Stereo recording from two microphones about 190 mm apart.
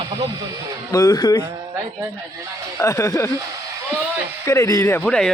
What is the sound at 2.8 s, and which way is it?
Speech, 15° left (ahead or behind).